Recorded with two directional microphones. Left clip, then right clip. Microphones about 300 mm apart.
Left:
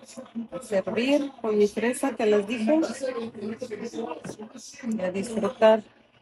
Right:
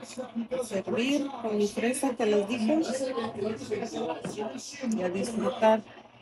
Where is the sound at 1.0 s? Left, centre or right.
Centre.